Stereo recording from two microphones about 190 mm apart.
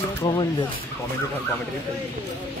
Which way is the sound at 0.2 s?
25° left (ahead or behind).